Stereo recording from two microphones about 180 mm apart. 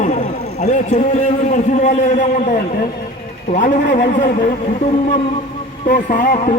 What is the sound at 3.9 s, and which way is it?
Speech, 45° left (ahead or behind).